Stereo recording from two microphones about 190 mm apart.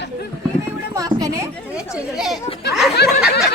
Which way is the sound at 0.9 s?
20° right (ahead or behind).